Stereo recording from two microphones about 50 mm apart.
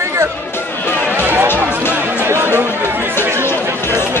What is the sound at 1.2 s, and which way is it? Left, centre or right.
Music, right.